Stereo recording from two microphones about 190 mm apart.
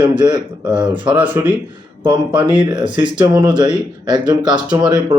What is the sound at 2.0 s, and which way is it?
Speech, 25° right (ahead or behind).